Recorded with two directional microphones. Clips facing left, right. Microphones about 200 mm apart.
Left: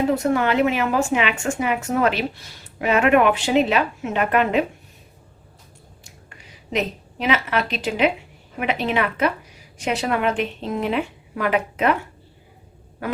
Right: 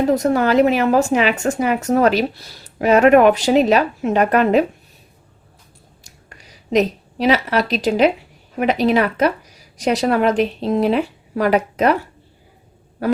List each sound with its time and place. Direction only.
0.1 s a woman's voice: 40° right (ahead or behind)
6.7 s a woman's voice: 35° right (ahead or behind)